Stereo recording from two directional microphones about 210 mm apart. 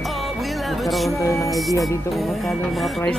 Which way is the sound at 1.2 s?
15° left (ahead or behind).